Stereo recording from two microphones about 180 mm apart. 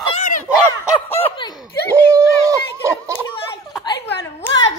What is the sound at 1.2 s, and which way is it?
Snicker, 25° left (ahead or behind).